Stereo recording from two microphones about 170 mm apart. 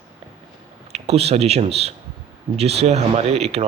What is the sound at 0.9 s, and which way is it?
Speech, 35° right (ahead or behind).